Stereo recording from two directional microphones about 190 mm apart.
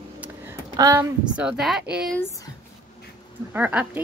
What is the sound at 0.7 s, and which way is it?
Speech, 15° right (ahead or behind).